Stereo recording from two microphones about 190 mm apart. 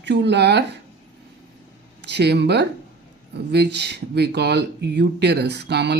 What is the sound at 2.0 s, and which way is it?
Speech, 60° right (ahead or behind).